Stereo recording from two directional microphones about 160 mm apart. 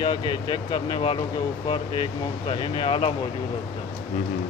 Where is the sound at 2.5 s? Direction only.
30° left (ahead or behind).